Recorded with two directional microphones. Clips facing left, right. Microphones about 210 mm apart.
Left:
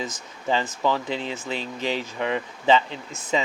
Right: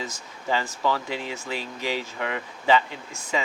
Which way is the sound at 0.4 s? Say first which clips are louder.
Left 2 dB; 20° left (ahead or behind).